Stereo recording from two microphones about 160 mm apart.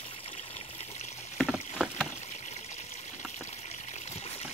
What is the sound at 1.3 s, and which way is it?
Rowboat, centre (ahead or behind).